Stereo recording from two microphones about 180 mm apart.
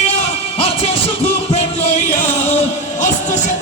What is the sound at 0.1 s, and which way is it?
Music, 30° left (ahead or behind).